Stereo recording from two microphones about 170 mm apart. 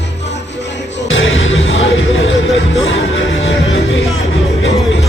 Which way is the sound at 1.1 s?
90° left.